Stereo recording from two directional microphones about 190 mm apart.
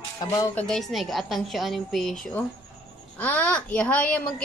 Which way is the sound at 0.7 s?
Centre (ahead or behind).